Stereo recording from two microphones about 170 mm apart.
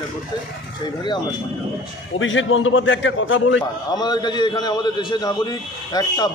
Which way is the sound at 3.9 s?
25° left (ahead or behind).